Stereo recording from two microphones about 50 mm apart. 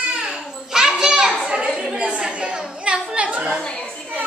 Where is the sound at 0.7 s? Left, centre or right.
Centre.